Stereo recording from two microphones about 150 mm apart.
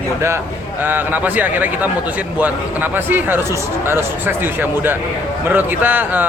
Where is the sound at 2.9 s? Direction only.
15° right (ahead or behind).